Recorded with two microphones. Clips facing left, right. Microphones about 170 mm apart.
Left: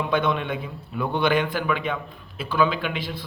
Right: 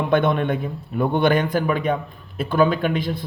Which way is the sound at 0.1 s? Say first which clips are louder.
Right 6 dB; 50° right (ahead or behind).